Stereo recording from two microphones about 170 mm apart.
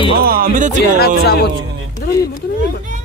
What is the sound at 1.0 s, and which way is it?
Speech, 70° left (ahead or behind).